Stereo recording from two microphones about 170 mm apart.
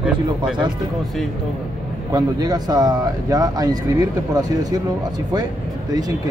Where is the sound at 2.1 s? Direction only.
20° right (ahead or behind).